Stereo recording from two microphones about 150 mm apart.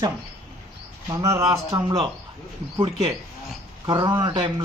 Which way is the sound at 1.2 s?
20° right (ahead or behind).